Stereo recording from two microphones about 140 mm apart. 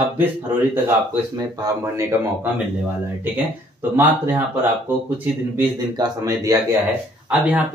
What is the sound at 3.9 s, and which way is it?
Speech, 15° right (ahead or behind).